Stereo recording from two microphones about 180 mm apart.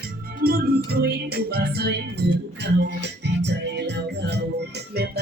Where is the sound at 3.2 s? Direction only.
70° right (ahead or behind).